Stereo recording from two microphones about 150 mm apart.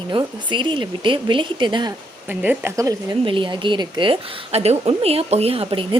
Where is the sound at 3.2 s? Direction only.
35° right (ahead or behind).